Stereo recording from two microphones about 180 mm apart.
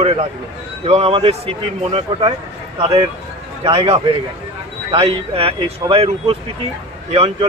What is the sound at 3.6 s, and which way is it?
A man's voice, 30° right (ahead or behind).